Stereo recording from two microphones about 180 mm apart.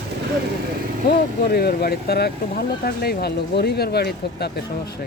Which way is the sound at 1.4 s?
60° left (ahead or behind).